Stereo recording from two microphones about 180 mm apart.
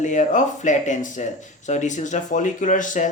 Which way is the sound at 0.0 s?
45° left (ahead or behind).